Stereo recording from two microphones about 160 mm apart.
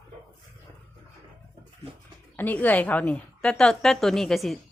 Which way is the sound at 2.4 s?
10° left (ahead or behind).